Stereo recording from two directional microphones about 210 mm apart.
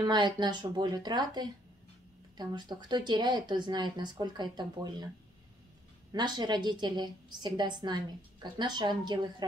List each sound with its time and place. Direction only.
0.0 s a woman's voice: 20° right (ahead or behind)
6.1 s a woman's voice: 20° right (ahead or behind)